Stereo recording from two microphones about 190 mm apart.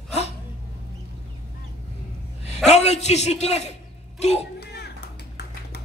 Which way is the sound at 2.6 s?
35° left (ahead or behind).